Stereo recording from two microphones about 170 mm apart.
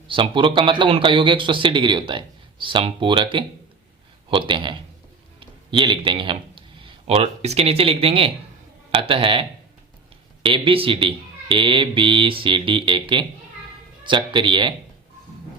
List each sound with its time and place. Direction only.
0.1 s a man's voice: 30° right (ahead or behind)